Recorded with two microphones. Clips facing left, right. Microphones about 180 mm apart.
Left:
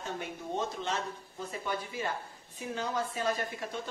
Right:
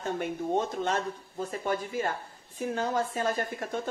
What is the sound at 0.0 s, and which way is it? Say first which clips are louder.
Speech: right 7 dB; 50° right (ahead or behind).